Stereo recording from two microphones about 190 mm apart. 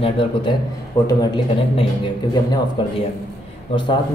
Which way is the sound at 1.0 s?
25° left (ahead or behind).